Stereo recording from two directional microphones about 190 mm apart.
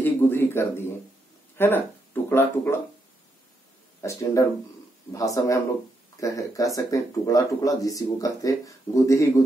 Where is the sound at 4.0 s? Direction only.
15° left (ahead or behind).